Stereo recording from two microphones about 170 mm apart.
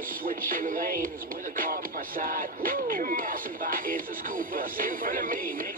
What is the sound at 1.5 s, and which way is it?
Music, 55° right (ahead or behind).